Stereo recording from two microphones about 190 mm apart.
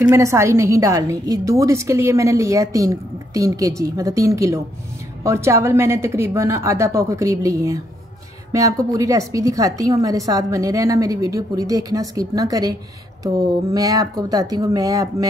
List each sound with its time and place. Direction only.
0.1 s a woman's voice: 15° right (ahead or behind)
13.7 s speech: 20° right (ahead or behind)